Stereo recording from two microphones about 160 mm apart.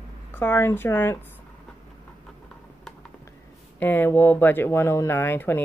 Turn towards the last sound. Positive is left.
turn(degrees=15)  # may be behind; listen again after turning